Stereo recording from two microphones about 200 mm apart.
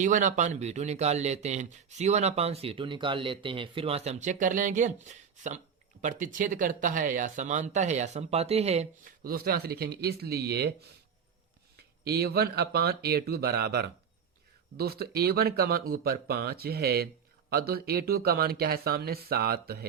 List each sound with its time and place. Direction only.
0.0 s speech: 40° right (ahead or behind)
9.2 s speech: 50° right (ahead or behind)
12.0 s speech: 50° right (ahead or behind)